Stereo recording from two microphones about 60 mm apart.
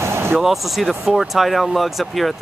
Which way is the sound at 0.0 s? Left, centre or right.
Right.